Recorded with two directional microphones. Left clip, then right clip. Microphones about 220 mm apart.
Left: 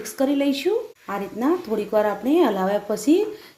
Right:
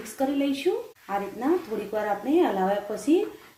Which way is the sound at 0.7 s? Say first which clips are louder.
Left 4 dB; 50° left (ahead or behind).